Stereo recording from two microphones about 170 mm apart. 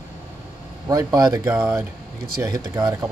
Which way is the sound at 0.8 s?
25° right (ahead or behind).